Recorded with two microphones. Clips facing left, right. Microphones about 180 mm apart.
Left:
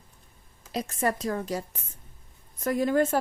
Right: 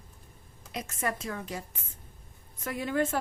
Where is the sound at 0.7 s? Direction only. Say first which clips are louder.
Left 6 dB; 35° left (ahead or behind).